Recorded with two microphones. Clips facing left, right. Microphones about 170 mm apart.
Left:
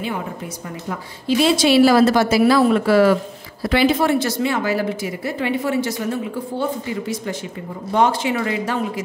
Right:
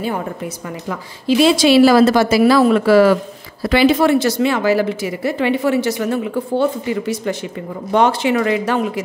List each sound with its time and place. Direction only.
1.2 s speech: 90° right; by 9.0 s 70° right (ahead or behind)